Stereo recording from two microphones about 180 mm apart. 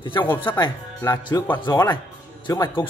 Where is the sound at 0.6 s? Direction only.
20° left (ahead or behind).